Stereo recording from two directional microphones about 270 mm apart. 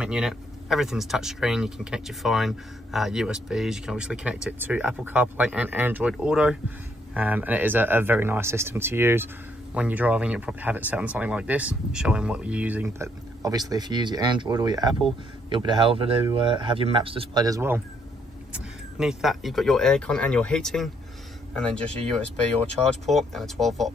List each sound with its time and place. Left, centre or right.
0.0 s speech: centre